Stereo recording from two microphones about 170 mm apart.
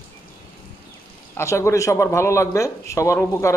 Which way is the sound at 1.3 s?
15° left (ahead or behind).